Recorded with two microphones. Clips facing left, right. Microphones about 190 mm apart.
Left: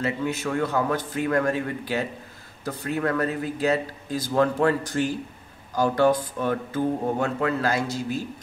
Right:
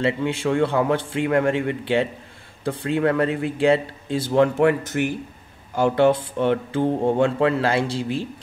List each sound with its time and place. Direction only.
0.0 s speech: 30° right (ahead or behind)